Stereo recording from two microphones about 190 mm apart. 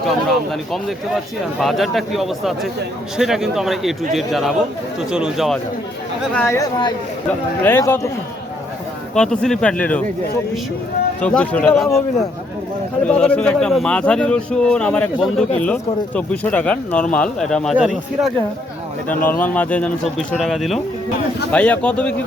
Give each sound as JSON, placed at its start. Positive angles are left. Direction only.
{"t": 0.0, "sound": "a man's voice", "side_deg": 0}
{"t": 6.6, "sound": "a man's voice", "side_deg": 20}
{"t": 9.1, "sound": "speech", "side_deg": 5}
{"t": 11.2, "sound": "a man's voice", "side_deg": 5}
{"t": 13.1, "sound": "speech", "side_deg": 5}
{"t": 19.3, "sound": "a man's voice", "side_deg": 10}